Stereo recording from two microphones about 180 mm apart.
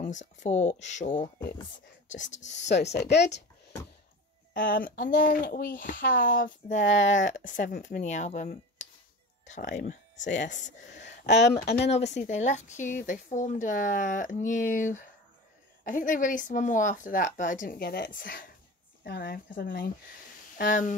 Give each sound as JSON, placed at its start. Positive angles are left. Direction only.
{"t": 0.0, "sound": "speech", "side_deg": 45}
{"t": 2.4, "sound": "speech", "side_deg": 80}
{"t": 4.6, "sound": "speech", "side_deg": 50}
{"t": 11.1, "sound": "speech", "side_deg": 75}
{"t": 11.9, "sound": "speech", "side_deg": 40}
{"t": 20.5, "sound": "speech", "side_deg": 45}